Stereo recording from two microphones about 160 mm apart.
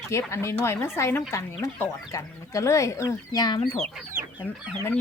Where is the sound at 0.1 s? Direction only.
15° left (ahead or behind).